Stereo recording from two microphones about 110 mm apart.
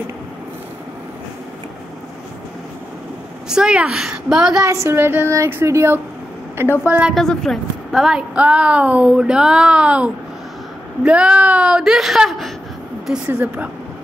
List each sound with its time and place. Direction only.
3.4 s a woman's voice: 5° right (ahead or behind)
4.6 s speech: 25° right (ahead or behind)
6.9 s a woman's voice: 10° right (ahead or behind)
7.2 s a woman's voice: 5° left (ahead or behind)
13.3 s a woman's voice: 15° right (ahead or behind)